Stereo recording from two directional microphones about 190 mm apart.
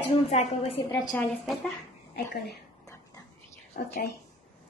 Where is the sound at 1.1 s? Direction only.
Centre (ahead or behind).